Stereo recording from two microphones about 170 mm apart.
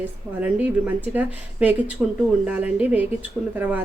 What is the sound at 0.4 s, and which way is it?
A woman's voice, 10° right (ahead or behind).